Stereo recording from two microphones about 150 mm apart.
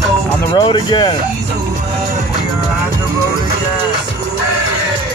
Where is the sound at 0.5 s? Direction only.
30° left (ahead or behind).